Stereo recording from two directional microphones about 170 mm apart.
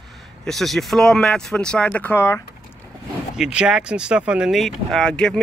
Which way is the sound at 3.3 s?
5° right (ahead or behind).